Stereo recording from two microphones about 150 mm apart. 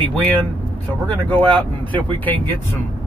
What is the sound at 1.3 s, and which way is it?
Speech, 35° right (ahead or behind).